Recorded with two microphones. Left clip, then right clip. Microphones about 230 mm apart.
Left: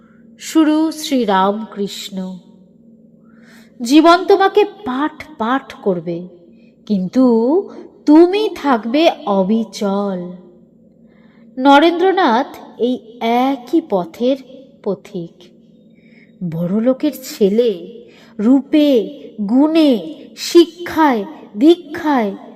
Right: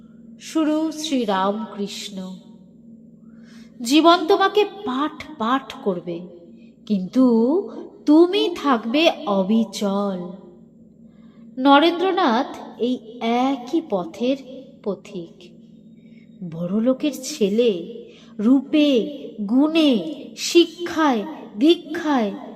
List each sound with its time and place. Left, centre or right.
0.3 s a woman's voice: left
3.8 s a woman's voice: left
6.8 s a woman's voice: left
11.5 s a woman's voice: left
12.5 s a sound: centre
13.1 s a woman's voice: left
16.5 s a woman's voice: left
19.0 s a sound: centre
19.4 s a woman's voice: left
20.0 s a woman's voice: centre
20.3 s a woman's voice: left
21.2 s a sound: centre
21.9 s a woman's voice: left
22.3 s speech: centre